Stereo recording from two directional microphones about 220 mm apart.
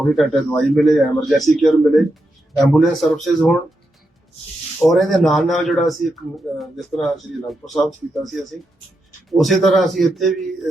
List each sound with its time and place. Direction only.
0.0 s speech: centre (ahead or behind)
4.8 s speech: centre (ahead or behind)